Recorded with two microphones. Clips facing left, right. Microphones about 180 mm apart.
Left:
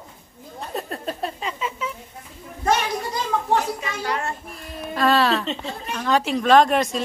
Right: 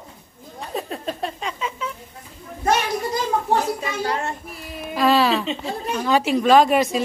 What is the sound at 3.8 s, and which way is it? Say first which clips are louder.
Speech: right 2 dB; 30° right (ahead or behind).